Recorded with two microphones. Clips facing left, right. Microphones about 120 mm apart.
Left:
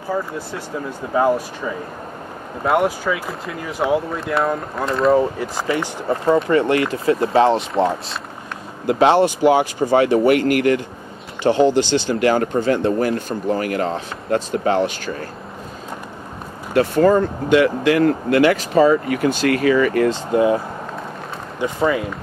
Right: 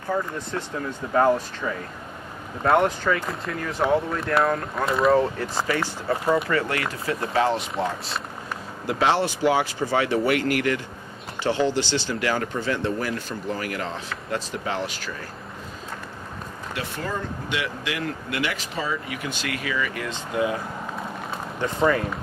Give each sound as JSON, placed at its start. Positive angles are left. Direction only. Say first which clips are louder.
{"t": 0.1, "sound": "speech", "louder": "left 2 dB", "side_deg": 5}
{"t": 2.6, "sound": "speech", "louder": "left 2 dB", "side_deg": 5}
{"t": 5.1, "sound": "speech", "louder": "left 3 dB", "side_deg": 10}
{"t": 9.2, "sound": "speech", "louder": "left 7 dB", "side_deg": 15}
{"t": 9.8, "sound": "speech", "louder": "left 9 dB", "side_deg": 45}
{"t": 11.6, "sound": "speech", "louder": "left 8 dB", "side_deg": 15}
{"t": 12.1, "sound": "speech", "louder": "left 8 dB", "side_deg": 45}
{"t": 16.7, "sound": "speech", "louder": "left 17 dB", "side_deg": 50}
{"t": 21.7, "sound": "speech", "louder": "left 2 dB", "side_deg": 10}